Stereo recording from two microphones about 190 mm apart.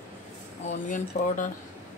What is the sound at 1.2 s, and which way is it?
Speech, 45° left (ahead or behind).